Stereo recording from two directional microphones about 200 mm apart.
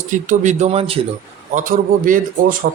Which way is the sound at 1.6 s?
40° right (ahead or behind).